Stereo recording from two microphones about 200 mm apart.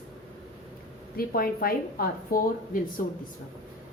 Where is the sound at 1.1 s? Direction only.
45° left (ahead or behind).